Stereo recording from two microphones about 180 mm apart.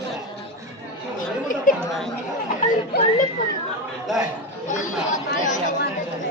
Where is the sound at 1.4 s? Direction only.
50° left (ahead or behind).